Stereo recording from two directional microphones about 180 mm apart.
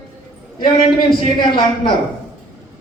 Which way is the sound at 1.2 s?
30° left (ahead or behind).